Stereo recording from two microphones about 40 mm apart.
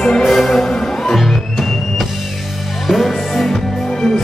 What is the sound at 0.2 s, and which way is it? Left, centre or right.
Music, centre.